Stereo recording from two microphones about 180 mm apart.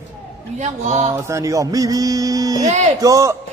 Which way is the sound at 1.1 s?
15° right (ahead or behind).